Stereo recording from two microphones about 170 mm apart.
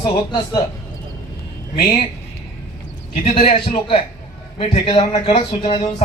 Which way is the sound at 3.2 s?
40° left (ahead or behind).